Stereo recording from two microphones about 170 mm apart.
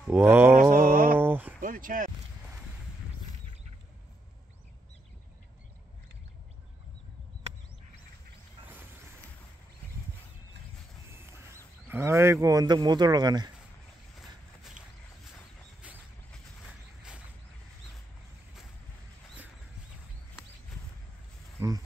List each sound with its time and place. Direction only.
0.0 s mantra: 10° right (ahead or behind)
0.6 s mantra: 55° right (ahead or behind)
1.1 s a sound: 10° right (ahead or behind)
1.6 s speech: 55° right (ahead or behind)
11.9 s speech: 15° right (ahead or behind)
21.5 s a sound: 20° right (ahead or behind)